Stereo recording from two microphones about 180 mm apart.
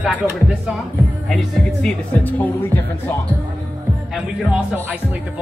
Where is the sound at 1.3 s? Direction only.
Centre (ahead or behind).